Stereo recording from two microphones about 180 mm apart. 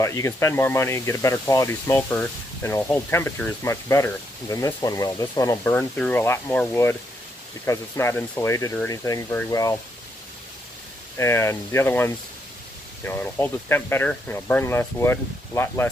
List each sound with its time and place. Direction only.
0.0 s speech: 15° left (ahead or behind)
11.1 s speech: 15° left (ahead or behind)